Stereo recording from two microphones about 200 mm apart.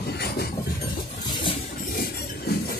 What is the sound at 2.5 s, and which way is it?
Chink, 55° left (ahead or behind).